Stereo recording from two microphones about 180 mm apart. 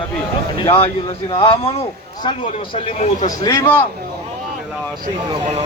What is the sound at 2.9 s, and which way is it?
Speech, 40° left (ahead or behind).